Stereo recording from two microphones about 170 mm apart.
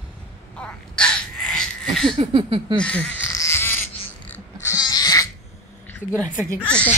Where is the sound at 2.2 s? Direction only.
30° right (ahead or behind).